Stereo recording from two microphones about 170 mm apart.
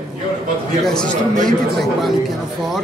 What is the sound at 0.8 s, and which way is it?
Speech, 5° left (ahead or behind).